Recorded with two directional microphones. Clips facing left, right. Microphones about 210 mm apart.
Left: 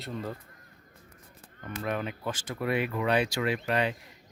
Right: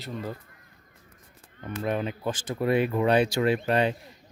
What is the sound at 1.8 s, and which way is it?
Speech, 25° right (ahead or behind).